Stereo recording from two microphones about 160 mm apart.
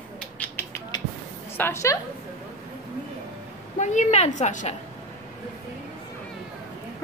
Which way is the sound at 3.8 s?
50° left (ahead or behind).